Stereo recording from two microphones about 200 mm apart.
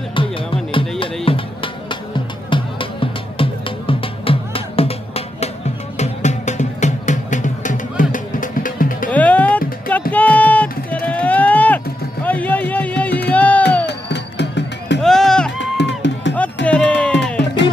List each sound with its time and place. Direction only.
0.1 s music: 25° left (ahead or behind); by 9.1 s 40° left (ahead or behind)
9.1 s music: 10° left (ahead or behind)
10.1 s a sound: 10° left (ahead or behind)
12.3 s music: 10° left (ahead or behind)
13.8 s music: 60° left (ahead or behind)
15.0 s music: centre (ahead or behind)
15.6 s music: 60° left (ahead or behind)
16.6 s music: 5° left (ahead or behind)